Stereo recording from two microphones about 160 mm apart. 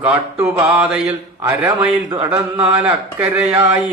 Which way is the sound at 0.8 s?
5° right (ahead or behind).